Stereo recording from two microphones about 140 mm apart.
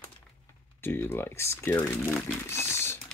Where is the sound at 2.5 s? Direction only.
20° left (ahead or behind).